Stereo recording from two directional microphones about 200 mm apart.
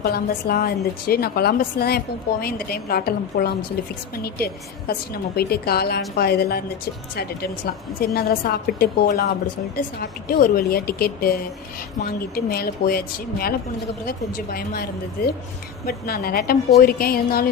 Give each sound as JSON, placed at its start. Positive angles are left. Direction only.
{"t": 0.0, "sound": "a woman's voice", "side_deg": 50}